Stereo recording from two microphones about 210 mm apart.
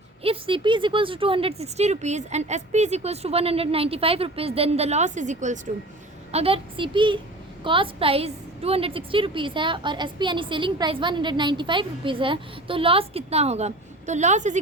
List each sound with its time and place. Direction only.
0.2 s a woman's voice: 25° right (ahead or behind)